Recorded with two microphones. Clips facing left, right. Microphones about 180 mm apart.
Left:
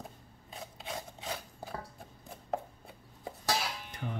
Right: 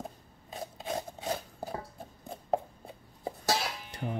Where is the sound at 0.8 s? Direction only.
35° right (ahead or behind).